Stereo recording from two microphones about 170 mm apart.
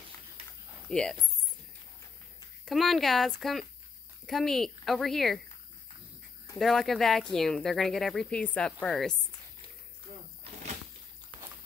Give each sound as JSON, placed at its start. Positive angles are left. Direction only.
{"t": 0.8, "sound": "speech", "side_deg": 5}
{"t": 2.6, "sound": "speech", "side_deg": 0}
{"t": 6.6, "sound": "speech", "side_deg": 0}
{"t": 10.4, "sound": "a sound", "side_deg": -40}